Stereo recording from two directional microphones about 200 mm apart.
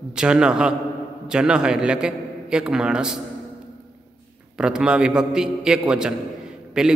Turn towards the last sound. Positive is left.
turn(degrees=-5)  # may be behind; listen again after turning